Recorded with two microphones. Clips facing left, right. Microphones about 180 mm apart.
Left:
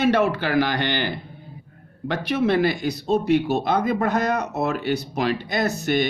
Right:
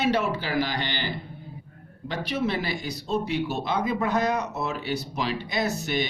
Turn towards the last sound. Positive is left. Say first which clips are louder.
# left 5 dB
turn(degrees=55)  # may be behind; listen again after turning